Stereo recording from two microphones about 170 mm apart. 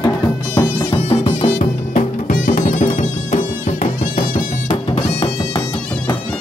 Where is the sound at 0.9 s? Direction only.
30° left (ahead or behind).